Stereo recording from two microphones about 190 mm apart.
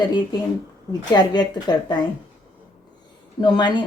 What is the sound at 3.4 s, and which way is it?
Speech, 20° left (ahead or behind).